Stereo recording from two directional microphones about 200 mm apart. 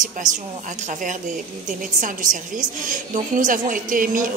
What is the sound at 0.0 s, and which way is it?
Speech, 40° right (ahead or behind).